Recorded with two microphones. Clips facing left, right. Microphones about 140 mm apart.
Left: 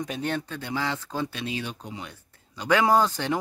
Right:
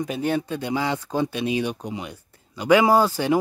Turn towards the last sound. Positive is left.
turn(degrees=-10)  # may be behind; listen again after turning